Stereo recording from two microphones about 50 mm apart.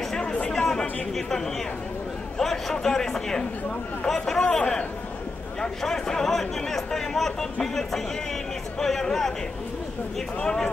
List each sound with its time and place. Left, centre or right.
0.1 s chatter: left
2.3 s a man's voice: centre
4.5 s speech: centre
10.4 s speech: centre